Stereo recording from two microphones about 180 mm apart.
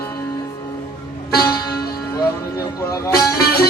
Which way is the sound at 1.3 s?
60° left (ahead or behind).